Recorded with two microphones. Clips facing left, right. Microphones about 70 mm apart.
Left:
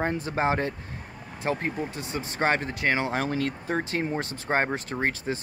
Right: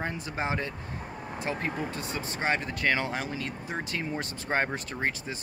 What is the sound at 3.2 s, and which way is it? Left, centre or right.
Speech, left.